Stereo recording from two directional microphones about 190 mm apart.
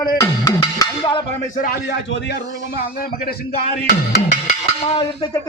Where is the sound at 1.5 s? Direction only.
50° left (ahead or behind).